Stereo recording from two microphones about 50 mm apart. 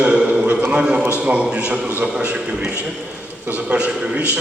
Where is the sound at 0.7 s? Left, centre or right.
Right.